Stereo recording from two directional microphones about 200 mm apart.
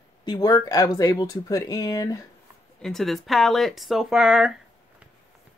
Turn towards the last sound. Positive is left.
turn(degrees=0)  # may be behind; listen again after turning